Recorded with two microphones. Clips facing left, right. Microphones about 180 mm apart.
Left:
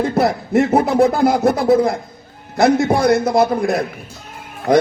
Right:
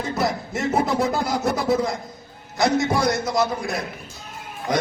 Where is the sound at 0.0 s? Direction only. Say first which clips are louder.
Left 7 dB; 60° left (ahead or behind).